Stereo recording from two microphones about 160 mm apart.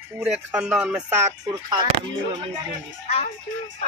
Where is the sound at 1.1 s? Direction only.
20° right (ahead or behind).